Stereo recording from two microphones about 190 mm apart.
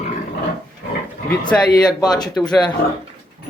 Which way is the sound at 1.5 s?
5° left (ahead or behind).